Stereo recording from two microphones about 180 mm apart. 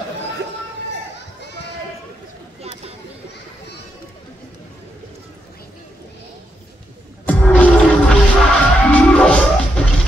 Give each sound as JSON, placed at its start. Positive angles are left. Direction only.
{"t": 1.4, "sound": "children playing", "side_deg": 70}
{"t": 7.2, "sound": "music", "side_deg": 10}